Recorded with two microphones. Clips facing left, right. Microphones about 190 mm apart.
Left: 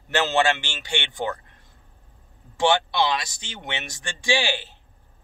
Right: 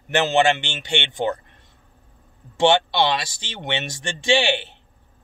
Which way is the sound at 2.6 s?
30° right (ahead or behind).